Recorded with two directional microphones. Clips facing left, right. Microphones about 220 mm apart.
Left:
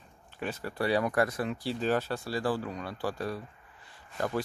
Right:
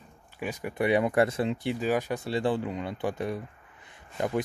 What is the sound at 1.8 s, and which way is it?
Speech, 10° right (ahead or behind).